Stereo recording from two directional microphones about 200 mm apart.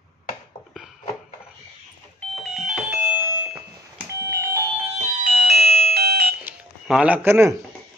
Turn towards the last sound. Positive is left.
turn(degrees=-10)  # may be behind; listen again after turning